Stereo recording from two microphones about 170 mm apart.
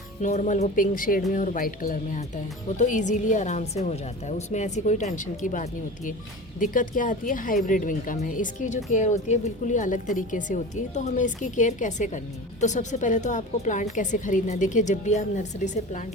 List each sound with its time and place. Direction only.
0.2 s speech: 45° left (ahead or behind)